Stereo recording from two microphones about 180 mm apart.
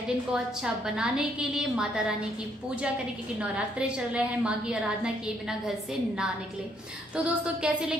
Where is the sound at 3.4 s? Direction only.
5° right (ahead or behind).